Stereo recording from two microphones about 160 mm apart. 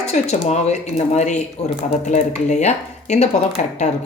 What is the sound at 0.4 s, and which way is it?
Speech, 45° left (ahead or behind).